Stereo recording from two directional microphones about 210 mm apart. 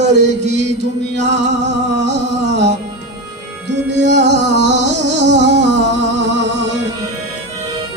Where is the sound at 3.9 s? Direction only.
55° right (ahead or behind).